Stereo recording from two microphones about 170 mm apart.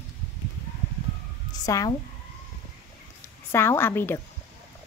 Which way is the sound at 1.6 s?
20° left (ahead or behind).